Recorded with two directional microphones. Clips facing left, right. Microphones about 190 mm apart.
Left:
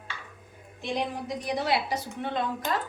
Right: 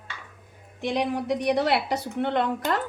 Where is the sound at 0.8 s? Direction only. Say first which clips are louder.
Right 5 dB; 65° right (ahead or behind).